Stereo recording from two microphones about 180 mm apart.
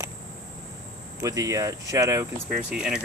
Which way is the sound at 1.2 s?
20° right (ahead or behind).